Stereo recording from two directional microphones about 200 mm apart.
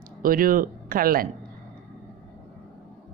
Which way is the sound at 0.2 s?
45° right (ahead or behind).